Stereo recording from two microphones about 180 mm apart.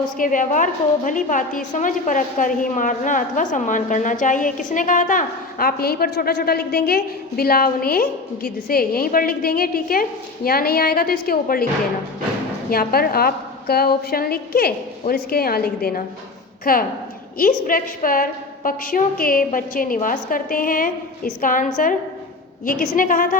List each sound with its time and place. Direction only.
0.2 s a woman's voice: 45° left (ahead or behind)
12.7 s a woman's voice: 55° left (ahead or behind)
23.0 s a woman's voice: 50° left (ahead or behind)